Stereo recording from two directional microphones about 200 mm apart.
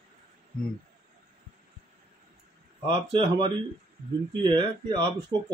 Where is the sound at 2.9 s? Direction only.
25° right (ahead or behind).